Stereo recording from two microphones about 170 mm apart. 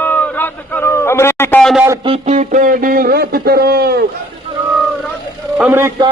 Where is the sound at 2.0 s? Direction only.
40° right (ahead or behind); by 4.0 s 70° right (ahead or behind).